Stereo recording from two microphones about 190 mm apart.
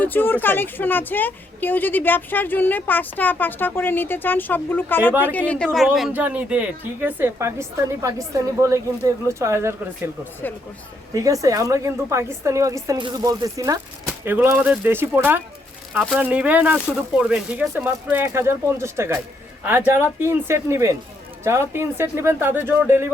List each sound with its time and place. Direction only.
0.0 s speech: 10° left (ahead or behind); by 9.7 s 15° right (ahead or behind)
11.1 s speech: 15° right (ahead or behind)